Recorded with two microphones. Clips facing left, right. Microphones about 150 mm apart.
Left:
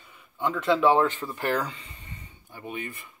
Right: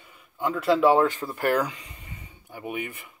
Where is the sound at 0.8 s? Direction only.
35° right (ahead or behind).